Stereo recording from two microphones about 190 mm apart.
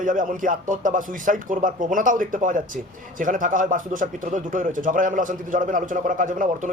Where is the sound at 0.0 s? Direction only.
45° right (ahead or behind).